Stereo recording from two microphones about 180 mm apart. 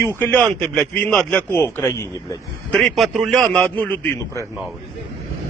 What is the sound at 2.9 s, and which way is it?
A man's voice, centre (ahead or behind).